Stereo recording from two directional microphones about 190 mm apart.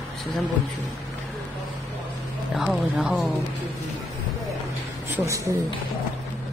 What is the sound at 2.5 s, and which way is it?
Speech, centre (ahead or behind).